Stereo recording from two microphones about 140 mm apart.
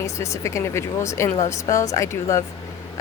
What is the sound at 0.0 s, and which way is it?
Speech, 20° left (ahead or behind).